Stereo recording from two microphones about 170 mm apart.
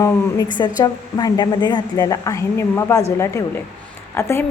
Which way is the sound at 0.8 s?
20° left (ahead or behind).